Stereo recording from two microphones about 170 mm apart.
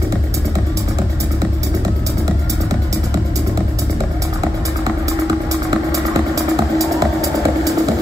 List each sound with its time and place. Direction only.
5.7 s music: 20° right (ahead or behind)